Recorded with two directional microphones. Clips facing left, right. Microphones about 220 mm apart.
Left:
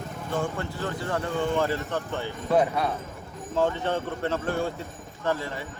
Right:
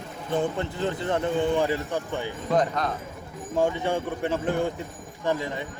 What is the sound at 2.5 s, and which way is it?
Speech, 10° left (ahead or behind).